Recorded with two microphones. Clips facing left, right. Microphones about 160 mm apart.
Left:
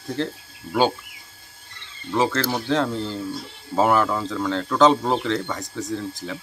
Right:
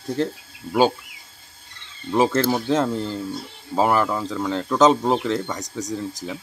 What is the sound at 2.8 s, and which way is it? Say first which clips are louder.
Speech: right 1 dB; 5° right (ahead or behind).